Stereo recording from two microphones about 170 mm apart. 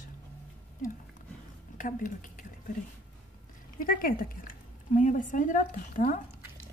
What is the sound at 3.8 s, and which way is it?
A woman's voice, 55° left (ahead or behind).